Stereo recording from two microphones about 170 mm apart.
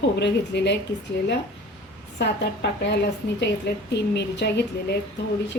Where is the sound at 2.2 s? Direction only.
90° left.